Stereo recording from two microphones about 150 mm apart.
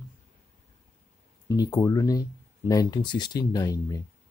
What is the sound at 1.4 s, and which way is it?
Speech, 25° left (ahead or behind).